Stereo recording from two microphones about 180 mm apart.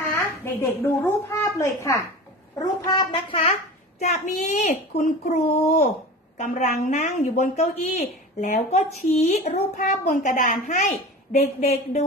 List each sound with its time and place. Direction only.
0.6 s a child's voice: 15° left (ahead or behind)
2.6 s a child's voice: 25° left (ahead or behind)
4.0 s a woman's voice: 40° left (ahead or behind)